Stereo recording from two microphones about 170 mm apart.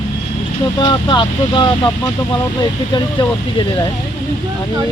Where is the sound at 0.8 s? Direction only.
25° left (ahead or behind).